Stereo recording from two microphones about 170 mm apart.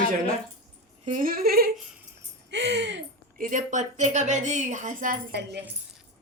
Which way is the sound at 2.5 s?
90° right.